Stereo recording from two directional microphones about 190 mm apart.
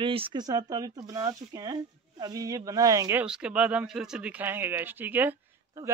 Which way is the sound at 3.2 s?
5° right (ahead or behind).